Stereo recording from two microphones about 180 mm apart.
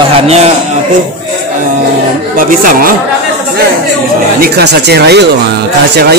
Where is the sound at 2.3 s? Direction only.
50° right (ahead or behind).